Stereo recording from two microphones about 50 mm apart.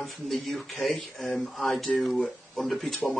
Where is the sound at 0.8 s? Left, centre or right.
Centre.